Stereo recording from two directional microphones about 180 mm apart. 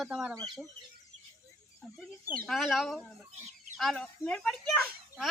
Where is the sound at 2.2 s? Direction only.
Centre (ahead or behind).